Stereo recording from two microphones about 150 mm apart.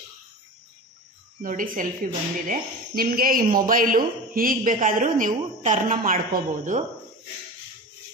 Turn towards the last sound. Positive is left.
turn(degrees=-60)  # may be behind; listen again after turning